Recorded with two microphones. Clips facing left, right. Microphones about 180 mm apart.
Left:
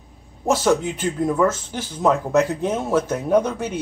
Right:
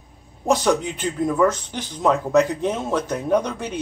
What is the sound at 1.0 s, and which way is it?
Speech, centre (ahead or behind).